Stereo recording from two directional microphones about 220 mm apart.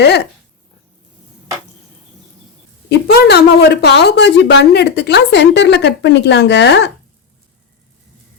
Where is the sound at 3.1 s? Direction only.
50° left (ahead or behind).